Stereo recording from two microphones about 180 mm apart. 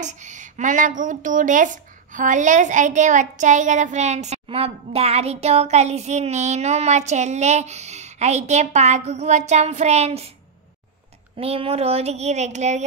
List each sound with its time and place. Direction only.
0.0 s a woman's voice: 40° right (ahead or behind)
11.3 s a child's voice: 35° right (ahead or behind)